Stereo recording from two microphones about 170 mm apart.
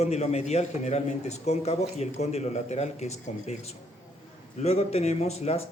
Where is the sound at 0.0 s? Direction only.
40° left (ahead or behind).